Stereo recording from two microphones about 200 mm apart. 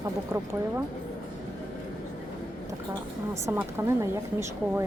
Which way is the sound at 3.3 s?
10° right (ahead or behind).